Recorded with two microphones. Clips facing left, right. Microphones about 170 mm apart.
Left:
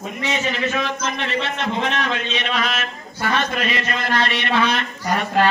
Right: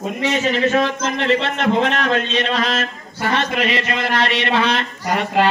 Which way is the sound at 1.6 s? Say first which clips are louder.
Right 5 dB; 50° right (ahead or behind).